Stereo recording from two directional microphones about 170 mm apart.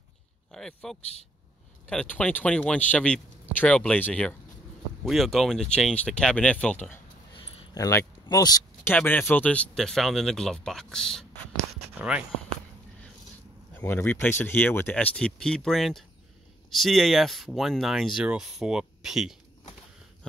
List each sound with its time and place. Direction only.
0.5 s speech: 5° left (ahead or behind)
7.3 s a sound: 20° left (ahead or behind)
8.9 s speech: 10° left (ahead or behind); by 12.3 s 5° right (ahead or behind)
13.7 s speech: 15° left (ahead or behind); by 19.3 s 5° right (ahead or behind)